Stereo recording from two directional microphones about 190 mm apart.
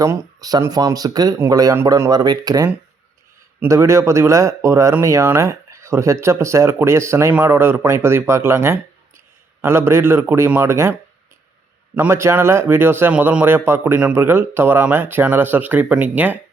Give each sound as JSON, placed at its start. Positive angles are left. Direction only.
{"t": 0.0, "sound": "speech", "side_deg": -20}
{"t": 11.9, "sound": "speech", "side_deg": -15}